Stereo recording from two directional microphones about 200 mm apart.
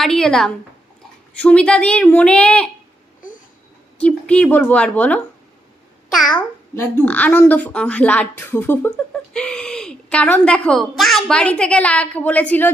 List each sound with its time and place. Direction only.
0.0 s speech: centre (ahead or behind)
3.9 s speech: 5° left (ahead or behind)
6.3 s speech: 10° left (ahead or behind)